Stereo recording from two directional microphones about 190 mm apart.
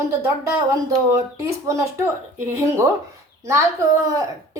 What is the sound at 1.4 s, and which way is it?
A woman's voice, 15° right (ahead or behind).